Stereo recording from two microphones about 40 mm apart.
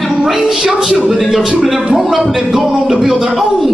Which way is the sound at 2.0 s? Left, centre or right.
Centre.